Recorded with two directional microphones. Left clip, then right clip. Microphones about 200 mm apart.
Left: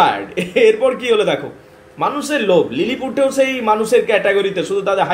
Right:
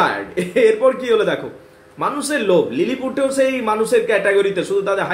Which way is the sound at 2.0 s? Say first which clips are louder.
Left 2 dB; centre (ahead or behind).